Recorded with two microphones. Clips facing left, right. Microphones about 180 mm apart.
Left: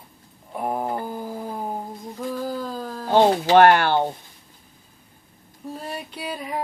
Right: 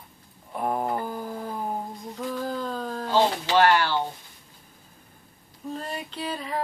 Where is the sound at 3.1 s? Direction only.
55° left (ahead or behind).